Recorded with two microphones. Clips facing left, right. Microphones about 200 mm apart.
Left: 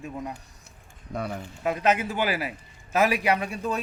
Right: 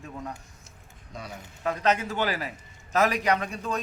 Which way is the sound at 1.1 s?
60° left (ahead or behind).